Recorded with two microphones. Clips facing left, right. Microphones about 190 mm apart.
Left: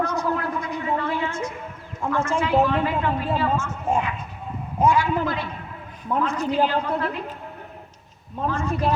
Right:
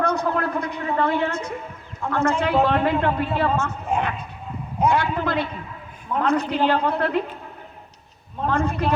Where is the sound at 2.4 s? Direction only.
65° right (ahead or behind).